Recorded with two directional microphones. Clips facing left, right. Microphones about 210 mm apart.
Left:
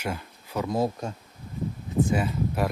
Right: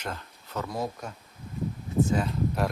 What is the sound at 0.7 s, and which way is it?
Speech, 30° left (ahead or behind).